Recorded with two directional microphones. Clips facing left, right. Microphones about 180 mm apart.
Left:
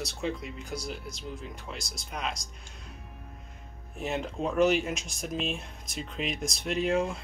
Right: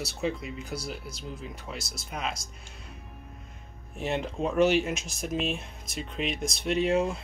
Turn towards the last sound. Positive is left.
turn(degrees=0)  # may be behind; listen again after turning